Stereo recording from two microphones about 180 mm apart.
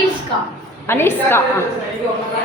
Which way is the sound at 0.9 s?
10° left (ahead or behind).